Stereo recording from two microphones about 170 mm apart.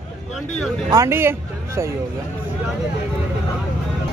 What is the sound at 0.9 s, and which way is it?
A man's voice, 15° right (ahead or behind).